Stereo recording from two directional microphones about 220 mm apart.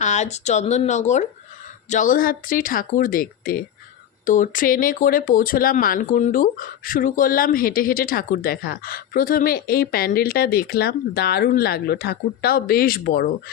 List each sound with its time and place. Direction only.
0.0 s speech: 30° left (ahead or behind)